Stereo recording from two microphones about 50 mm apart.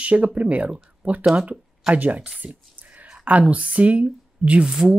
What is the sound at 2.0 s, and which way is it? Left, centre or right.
Speech, right.